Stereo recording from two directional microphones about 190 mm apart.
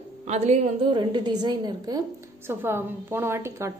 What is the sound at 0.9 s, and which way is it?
A woman's voice, 25° right (ahead or behind).